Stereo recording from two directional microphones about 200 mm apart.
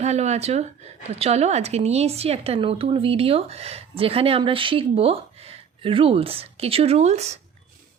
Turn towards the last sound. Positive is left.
turn(degrees=-35)  # may be behind; listen again after turning